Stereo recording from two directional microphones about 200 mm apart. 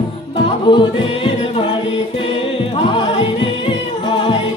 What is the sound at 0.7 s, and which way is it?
Music, 25° left (ahead or behind).